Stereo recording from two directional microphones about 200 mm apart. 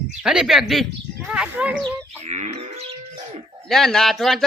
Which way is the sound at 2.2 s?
35° right (ahead or behind).